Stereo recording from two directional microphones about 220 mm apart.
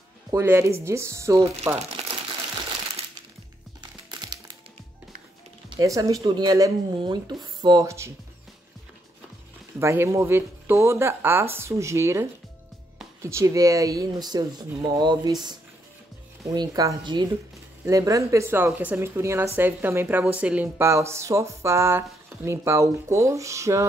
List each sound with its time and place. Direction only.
0.3 s speech: 10° right (ahead or behind)
1.8 s crumpling: 25° right (ahead or behind)
4.2 s music: 20° right (ahead or behind)
5.8 s speech: 15° right (ahead or behind)
9.8 s speech: 10° right (ahead or behind)
16.5 s speech: 20° right (ahead or behind)